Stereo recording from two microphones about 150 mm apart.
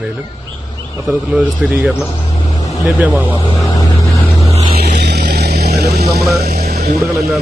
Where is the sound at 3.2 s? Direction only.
35° left (ahead or behind).